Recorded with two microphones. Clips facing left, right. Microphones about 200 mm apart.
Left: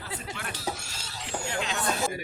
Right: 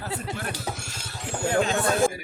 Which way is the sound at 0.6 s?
50° right (ahead or behind).